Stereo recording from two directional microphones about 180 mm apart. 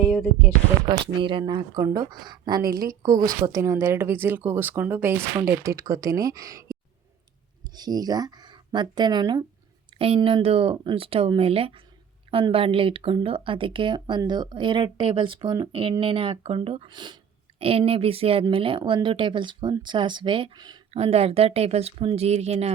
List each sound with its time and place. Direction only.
0.0 s speech: 5° right (ahead or behind)
0.9 s speech: 25° right (ahead or behind)